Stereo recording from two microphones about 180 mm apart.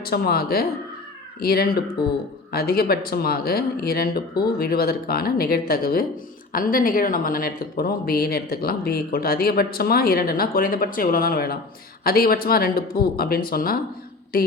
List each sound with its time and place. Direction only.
0.0 s speech: 60° left (ahead or behind)